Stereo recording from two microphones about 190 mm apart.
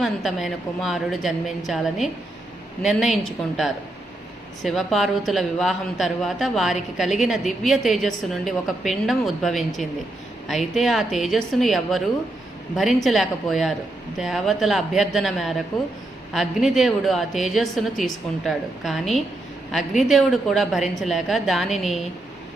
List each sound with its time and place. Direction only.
0.0 s a woman's voice: centre (ahead or behind)